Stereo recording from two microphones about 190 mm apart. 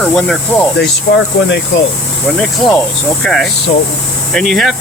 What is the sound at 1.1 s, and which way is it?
Speech, 60° left (ahead or behind).